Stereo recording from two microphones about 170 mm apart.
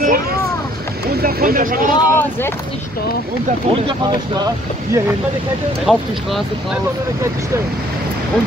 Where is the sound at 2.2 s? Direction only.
15° left (ahead or behind).